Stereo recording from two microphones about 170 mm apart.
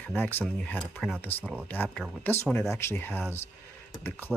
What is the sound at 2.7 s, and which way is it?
Speech, 15° left (ahead or behind).